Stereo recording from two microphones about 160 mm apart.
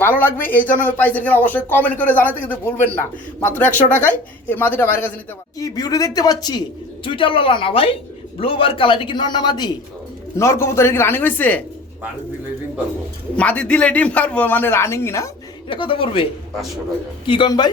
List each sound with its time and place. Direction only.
0.0 s a man's voice: 10° left (ahead or behind)
13.3 s speech: 10° left (ahead or behind)
15.7 s speech: 35° left (ahead or behind)
17.2 s a man's voice: 30° left (ahead or behind)